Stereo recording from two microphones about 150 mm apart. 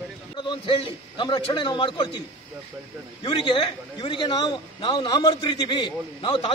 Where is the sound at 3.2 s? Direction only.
30° left (ahead or behind).